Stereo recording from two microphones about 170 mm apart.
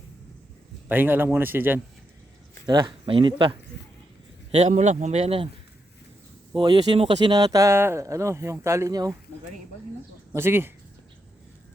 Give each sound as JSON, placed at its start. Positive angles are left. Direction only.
{"t": 0.9, "sound": "speech", "side_deg": -10}
{"t": 2.6, "sound": "speech", "side_deg": -25}
{"t": 4.5, "sound": "speech", "side_deg": -40}
{"t": 6.5, "sound": "speech", "side_deg": -30}
{"t": 10.3, "sound": "speech", "side_deg": -15}